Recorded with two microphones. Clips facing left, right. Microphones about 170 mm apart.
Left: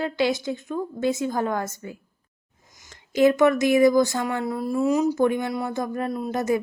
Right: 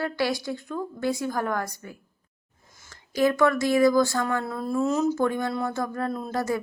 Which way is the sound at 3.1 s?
20° left (ahead or behind).